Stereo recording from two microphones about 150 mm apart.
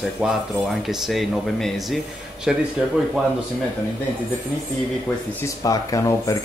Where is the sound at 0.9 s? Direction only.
Centre (ahead or behind).